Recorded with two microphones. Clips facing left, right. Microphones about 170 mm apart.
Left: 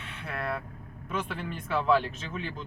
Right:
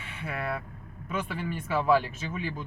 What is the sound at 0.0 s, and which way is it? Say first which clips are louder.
Vehicle: right 1 dB; 5° right (ahead or behind).